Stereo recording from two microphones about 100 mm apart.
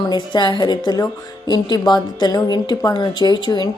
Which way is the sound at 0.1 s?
45° left (ahead or behind).